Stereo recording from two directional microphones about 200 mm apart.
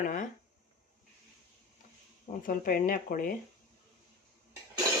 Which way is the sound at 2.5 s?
45° left (ahead or behind).